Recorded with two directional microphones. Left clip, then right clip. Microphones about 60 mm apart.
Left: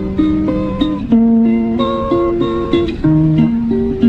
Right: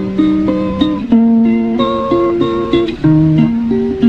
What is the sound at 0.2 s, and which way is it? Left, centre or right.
Music, left.